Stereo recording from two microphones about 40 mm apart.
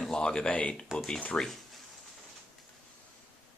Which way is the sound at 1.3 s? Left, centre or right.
Centre.